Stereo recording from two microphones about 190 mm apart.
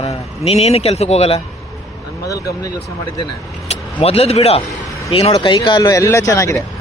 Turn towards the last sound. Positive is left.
turn(degrees=15)  # may be behind; listen again after turning